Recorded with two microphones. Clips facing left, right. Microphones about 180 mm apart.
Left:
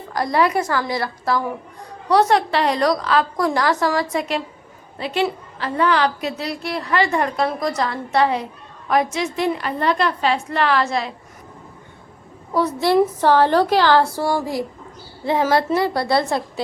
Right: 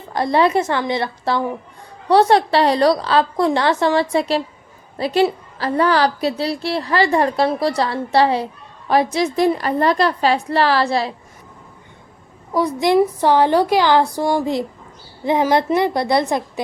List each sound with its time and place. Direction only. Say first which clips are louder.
0.1 s a woman's voice: right 3 dB; 25° right (ahead or behind)
12.5 s a woman's voice: right 1 dB; 15° right (ahead or behind)